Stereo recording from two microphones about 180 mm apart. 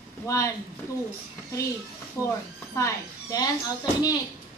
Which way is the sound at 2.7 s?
20° left (ahead or behind).